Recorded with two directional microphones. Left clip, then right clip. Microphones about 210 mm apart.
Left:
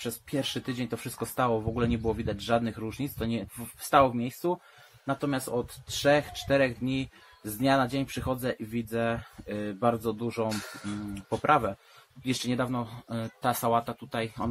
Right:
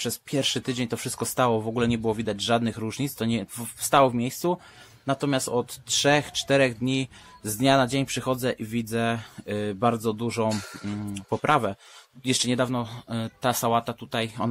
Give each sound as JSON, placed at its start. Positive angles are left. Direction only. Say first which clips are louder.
{"t": 0.0, "sound": "speech", "louder": "right 6 dB", "side_deg": -50}